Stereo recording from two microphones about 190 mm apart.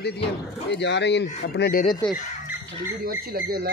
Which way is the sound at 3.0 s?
50° right (ahead or behind).